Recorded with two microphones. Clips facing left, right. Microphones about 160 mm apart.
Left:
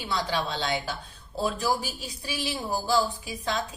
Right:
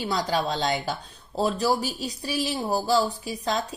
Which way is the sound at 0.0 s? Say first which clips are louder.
Right 3 dB; 40° right (ahead or behind).